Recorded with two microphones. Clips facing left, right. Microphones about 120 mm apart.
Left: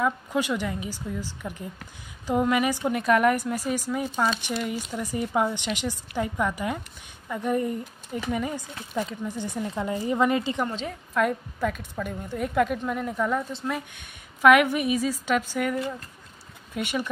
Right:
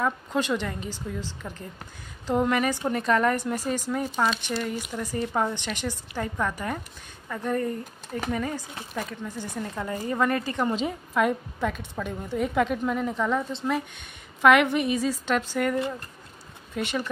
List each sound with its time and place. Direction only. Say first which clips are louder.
0.0 s a woman's voice: left 1 dB; 5° left (ahead or behind)
10.6 s a woman's voice: right 3 dB; 5° right (ahead or behind); by 17.1 s 10° left (ahead or behind)